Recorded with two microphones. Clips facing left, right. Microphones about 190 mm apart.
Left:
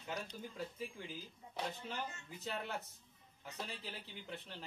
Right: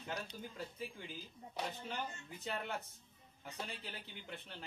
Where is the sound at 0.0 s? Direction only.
Centre (ahead or behind).